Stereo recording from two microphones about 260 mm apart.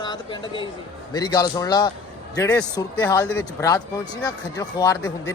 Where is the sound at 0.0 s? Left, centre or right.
Centre.